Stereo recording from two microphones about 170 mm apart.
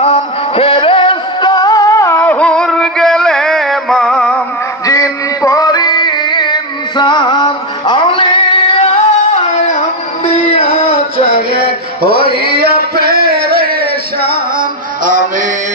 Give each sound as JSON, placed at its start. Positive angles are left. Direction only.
{"t": 0.0, "sound": "music", "side_deg": 35}
{"t": 4.8, "sound": "music", "side_deg": 20}
{"t": 10.2, "sound": "music", "side_deg": 40}
{"t": 11.5, "sound": "a sound", "side_deg": -65}
{"t": 14.2, "sound": "music", "side_deg": -60}